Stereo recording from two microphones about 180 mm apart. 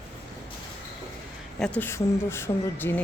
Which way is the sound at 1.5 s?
5° left (ahead or behind).